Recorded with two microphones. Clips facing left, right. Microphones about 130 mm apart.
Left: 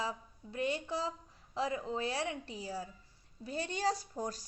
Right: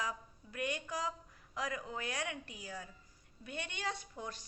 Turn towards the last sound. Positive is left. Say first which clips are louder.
# left 6 dB
turn(degrees=40)  # may be behind; listen again after turning